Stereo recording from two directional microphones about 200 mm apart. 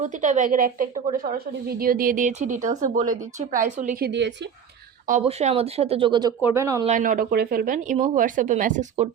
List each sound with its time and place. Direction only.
0.0 s a woman's voice: 35° right (ahead or behind); by 4.4 s 60° right (ahead or behind)
5.2 s speech: 30° right (ahead or behind)
6.8 s a woman's voice: 40° right (ahead or behind)